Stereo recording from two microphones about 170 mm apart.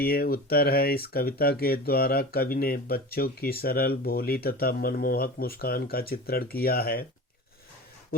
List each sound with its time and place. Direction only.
0.0 s speech: 60° left (ahead or behind)